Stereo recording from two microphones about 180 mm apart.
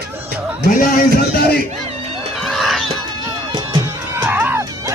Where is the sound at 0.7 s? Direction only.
50° left (ahead or behind).